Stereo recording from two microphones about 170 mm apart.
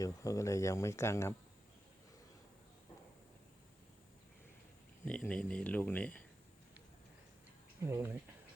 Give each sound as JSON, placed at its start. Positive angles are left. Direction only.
{"t": 0.0, "sound": "speech", "side_deg": 20}
{"t": 5.0, "sound": "speech", "side_deg": 5}
{"t": 7.8, "sound": "speech", "side_deg": -15}